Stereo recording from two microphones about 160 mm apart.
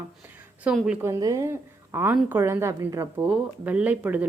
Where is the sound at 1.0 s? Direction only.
20° right (ahead or behind).